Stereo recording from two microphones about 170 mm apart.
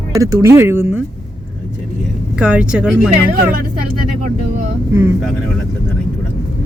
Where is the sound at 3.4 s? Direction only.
60° right (ahead or behind).